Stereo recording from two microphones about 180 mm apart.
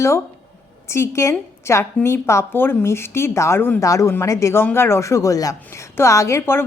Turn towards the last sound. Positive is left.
turn(degrees=15)  # may be behind; listen again after turning